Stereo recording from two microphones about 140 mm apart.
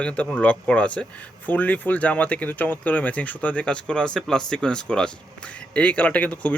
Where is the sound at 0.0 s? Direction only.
10° left (ahead or behind).